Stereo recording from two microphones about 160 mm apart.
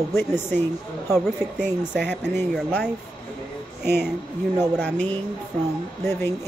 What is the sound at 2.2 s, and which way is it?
Speech, 15° left (ahead or behind).